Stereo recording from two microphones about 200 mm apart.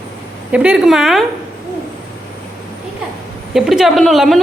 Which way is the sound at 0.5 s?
5° right (ahead or behind).